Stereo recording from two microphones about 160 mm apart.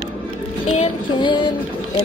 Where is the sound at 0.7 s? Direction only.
35° left (ahead or behind).